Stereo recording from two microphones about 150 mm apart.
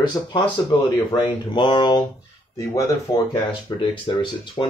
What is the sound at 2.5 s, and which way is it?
Speech, 20° left (ahead or behind).